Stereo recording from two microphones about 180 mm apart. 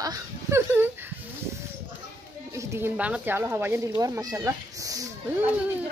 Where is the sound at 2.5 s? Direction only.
15° right (ahead or behind).